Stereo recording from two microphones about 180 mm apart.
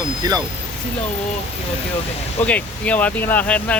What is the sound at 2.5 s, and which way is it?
Speech, 10° left (ahead or behind).